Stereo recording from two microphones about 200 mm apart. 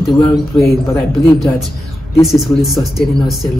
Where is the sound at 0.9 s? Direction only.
15° left (ahead or behind).